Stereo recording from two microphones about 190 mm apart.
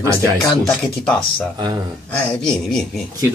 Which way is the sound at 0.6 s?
5° left (ahead or behind).